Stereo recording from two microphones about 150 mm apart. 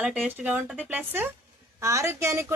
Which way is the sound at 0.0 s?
10° right (ahead or behind).